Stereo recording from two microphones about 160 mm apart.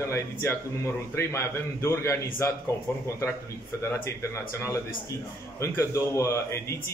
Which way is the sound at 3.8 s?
15° left (ahead or behind).